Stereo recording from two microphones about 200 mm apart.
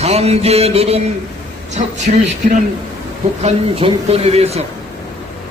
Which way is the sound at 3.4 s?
30° right (ahead or behind).